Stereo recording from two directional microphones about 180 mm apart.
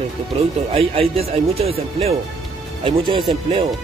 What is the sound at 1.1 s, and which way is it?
Speech, 35° right (ahead or behind).